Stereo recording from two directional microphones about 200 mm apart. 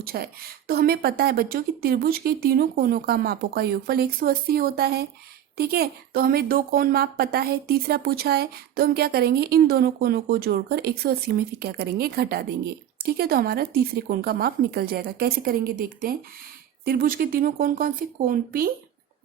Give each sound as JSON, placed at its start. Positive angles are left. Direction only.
{"t": 0.0, "sound": "a woman's voice", "side_deg": -50}